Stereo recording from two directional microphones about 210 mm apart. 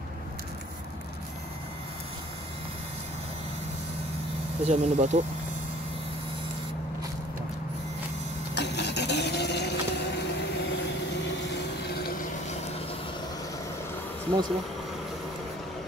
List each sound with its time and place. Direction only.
4.6 s speech: 30° right (ahead or behind)
8.5 s vehicle: 55° left (ahead or behind)